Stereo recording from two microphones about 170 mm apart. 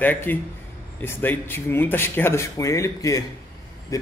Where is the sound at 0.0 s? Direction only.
10° left (ahead or behind).